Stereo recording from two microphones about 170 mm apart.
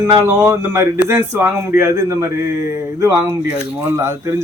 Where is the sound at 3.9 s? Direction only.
20° right (ahead or behind).